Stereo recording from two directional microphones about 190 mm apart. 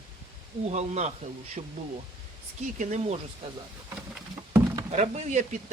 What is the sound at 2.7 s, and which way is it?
Speech, 40° right (ahead or behind).